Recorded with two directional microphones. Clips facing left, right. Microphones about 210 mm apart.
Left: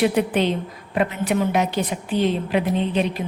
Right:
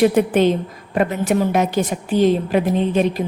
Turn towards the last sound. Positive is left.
turn(degrees=-45)  # may be behind; listen again after turning